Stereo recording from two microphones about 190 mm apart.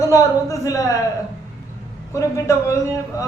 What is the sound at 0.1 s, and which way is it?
Speech, 15° left (ahead or behind).